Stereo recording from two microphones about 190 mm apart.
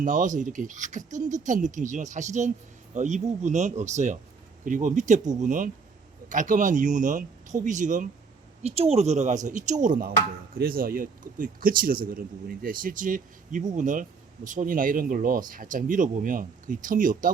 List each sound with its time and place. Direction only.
0.0 s speech: 40° right (ahead or behind)